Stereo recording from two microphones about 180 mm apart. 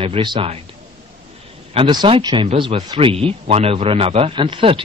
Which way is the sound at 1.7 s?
25° right (ahead or behind).